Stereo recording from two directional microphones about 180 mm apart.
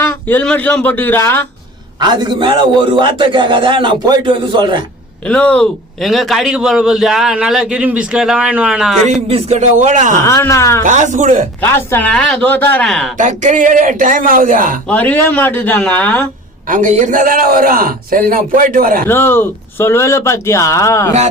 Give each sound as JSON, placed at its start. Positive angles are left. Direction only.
{"t": 0.1, "sound": "speech", "side_deg": 10}
{"t": 2.0, "sound": "a man's voice", "side_deg": -25}
{"t": 5.2, "sound": "a man's voice", "side_deg": 5}
{"t": 9.3, "sound": "speech", "side_deg": -40}
{"t": 10.2, "sound": "speech", "side_deg": 15}
{"t": 10.8, "sound": "a man's voice", "side_deg": -45}
{"t": 11.6, "sound": "speech", "side_deg": 10}
{"t": 13.1, "sound": "a man's voice", "side_deg": -40}
{"t": 14.8, "sound": "speech", "side_deg": 10}
{"t": 16.6, "sound": "a man's voice", "side_deg": -45}
{"t": 19.0, "sound": "speech", "side_deg": 15}